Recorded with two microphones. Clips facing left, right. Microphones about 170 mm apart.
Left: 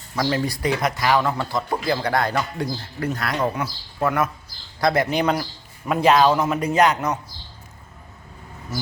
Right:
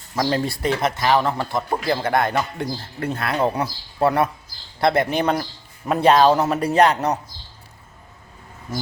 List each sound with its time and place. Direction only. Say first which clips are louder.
0.2 s a man's voice: right 1 dB; 30° right (ahead or behind)